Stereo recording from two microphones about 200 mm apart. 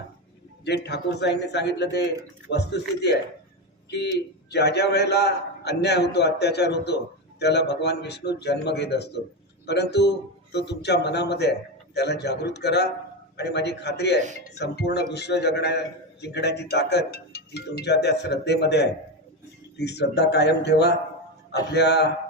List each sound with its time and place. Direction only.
0.6 s a man's voice: 55° left (ahead or behind)
4.5 s a man's voice: 55° left (ahead or behind)